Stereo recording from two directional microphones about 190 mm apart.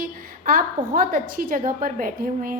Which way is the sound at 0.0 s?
50° right (ahead or behind).